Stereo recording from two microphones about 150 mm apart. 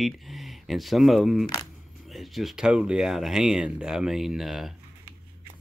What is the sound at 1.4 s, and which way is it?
Speech, 30° left (ahead or behind).